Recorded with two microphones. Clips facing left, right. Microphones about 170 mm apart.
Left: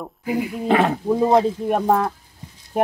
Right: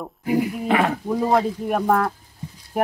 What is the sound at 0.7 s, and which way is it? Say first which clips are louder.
Speech: left 6 dB; 25° left (ahead or behind).